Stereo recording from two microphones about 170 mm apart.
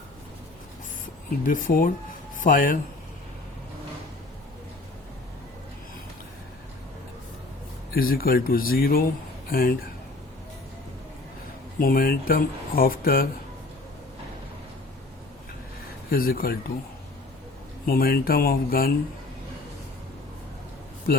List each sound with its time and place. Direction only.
1.5 s speech: 50° left (ahead or behind)
7.9 s speech: 60° left (ahead or behind)
11.8 s speech: 55° left (ahead or behind)
16.0 s speech: 60° left (ahead or behind)
17.8 s speech: 60° left (ahead or behind)